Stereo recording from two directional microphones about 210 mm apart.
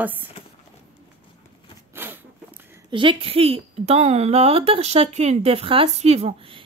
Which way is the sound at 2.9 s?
25° right (ahead or behind).